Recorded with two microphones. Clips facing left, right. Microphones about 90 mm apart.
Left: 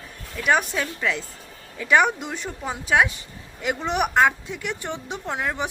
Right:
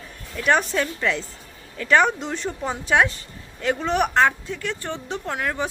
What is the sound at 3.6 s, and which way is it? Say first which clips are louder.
A woman's voice: right 2 dB; 15° left (ahead or behind).